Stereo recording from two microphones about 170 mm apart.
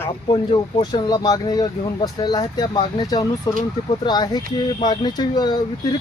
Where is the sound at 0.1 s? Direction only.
25° left (ahead or behind).